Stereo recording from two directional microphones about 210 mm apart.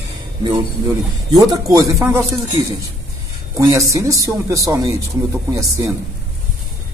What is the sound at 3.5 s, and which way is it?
Speech, 15° right (ahead or behind).